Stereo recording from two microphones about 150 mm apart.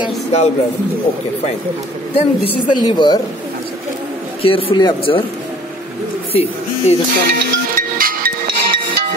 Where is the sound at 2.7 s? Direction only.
30° left (ahead or behind).